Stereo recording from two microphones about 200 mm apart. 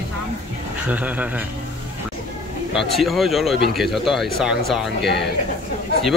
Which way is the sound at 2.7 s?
Centre (ahead or behind).